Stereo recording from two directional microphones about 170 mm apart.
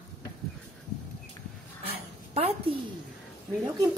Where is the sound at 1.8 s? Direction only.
35° right (ahead or behind).